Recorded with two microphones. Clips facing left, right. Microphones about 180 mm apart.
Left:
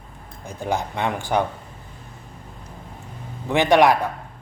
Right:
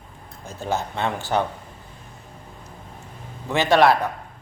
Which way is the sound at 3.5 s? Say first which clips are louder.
Left 1 dB; 15° left (ahead or behind).